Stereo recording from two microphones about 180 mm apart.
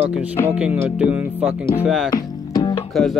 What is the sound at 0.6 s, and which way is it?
Speech, 5° right (ahead or behind).